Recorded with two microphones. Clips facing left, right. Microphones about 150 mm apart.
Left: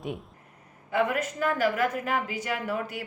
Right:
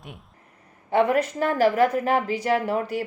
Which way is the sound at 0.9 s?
35° right (ahead or behind).